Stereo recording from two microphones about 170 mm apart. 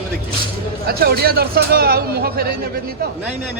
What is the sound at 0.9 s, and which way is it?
A man's voice, 65° right (ahead or behind).